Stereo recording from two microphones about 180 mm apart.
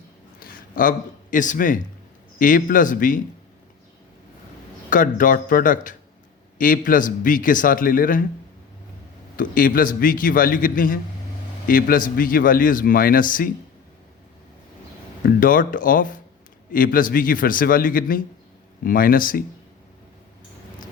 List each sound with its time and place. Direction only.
0.3 s a man's voice: 50° left (ahead or behind)
4.9 s a man's voice: 50° left (ahead or behind)
9.3 s a man's voice: 50° left (ahead or behind)
15.4 s a man's voice: 50° left (ahead or behind)